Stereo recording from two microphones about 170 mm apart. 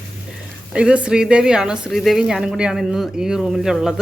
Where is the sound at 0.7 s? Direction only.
5° right (ahead or behind).